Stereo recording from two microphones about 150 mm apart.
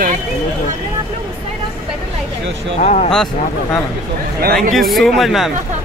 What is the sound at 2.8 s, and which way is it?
Speech, 50° left (ahead or behind).